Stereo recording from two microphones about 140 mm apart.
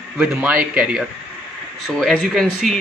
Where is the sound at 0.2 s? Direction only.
5° right (ahead or behind).